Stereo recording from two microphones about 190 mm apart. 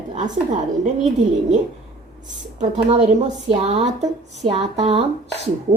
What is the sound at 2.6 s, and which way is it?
Speech, 40° right (ahead or behind).